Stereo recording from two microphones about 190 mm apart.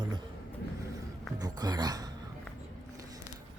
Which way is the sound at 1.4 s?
20° right (ahead or behind).